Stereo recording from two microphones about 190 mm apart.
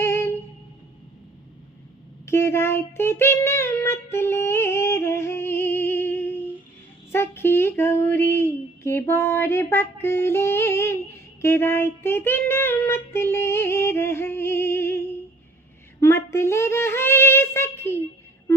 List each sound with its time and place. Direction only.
0.0 s music: 15° left (ahead or behind)
2.2 s child singing: 15° left (ahead or behind)
7.1 s a sound: 10° left (ahead or behind)
16.0 s female singing: 15° left (ahead or behind)